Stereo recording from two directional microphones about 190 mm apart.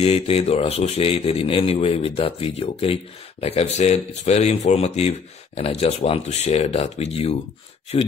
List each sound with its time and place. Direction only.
0.0 s a man's voice: 30° left (ahead or behind)